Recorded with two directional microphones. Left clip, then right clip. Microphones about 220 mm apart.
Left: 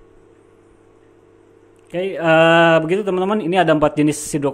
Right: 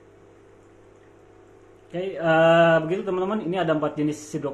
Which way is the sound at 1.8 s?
35° left (ahead or behind).